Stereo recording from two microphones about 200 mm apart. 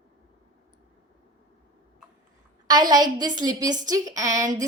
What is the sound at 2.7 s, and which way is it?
A woman's voice, 20° right (ahead or behind).